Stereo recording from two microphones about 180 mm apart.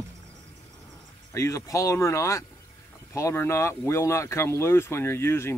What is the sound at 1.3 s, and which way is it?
Speech, 15° left (ahead or behind).